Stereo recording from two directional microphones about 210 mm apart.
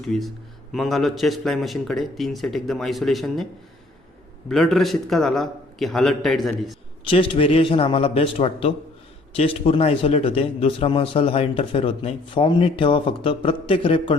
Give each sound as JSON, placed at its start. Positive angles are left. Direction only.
{"t": 0.0, "sound": "a man's voice", "side_deg": 0}
{"t": 4.4, "sound": "a man's voice", "side_deg": 0}
{"t": 7.1, "sound": "a man's voice", "side_deg": 25}